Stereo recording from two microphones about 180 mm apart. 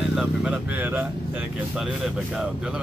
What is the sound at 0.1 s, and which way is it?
Speech, 5° right (ahead or behind).